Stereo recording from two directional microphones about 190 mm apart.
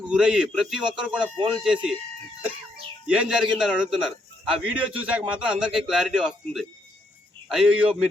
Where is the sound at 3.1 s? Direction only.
5° right (ahead or behind).